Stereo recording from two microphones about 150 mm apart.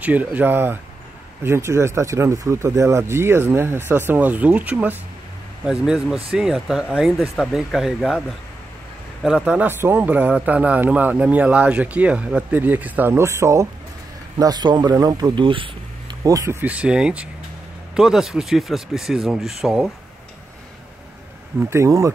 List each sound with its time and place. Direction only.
0.0 s a man's voice: 10° right (ahead or behind)
9.2 s a man's voice: 5° right (ahead or behind); by 16.2 s 35° right (ahead or behind)
16.3 s a man's voice: 20° right (ahead or behind); by 19.9 s centre (ahead or behind)
21.5 s speech: 20° right (ahead or behind)